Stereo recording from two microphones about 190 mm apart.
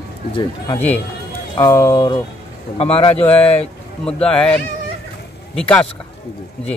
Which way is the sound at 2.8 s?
30° left (ahead or behind).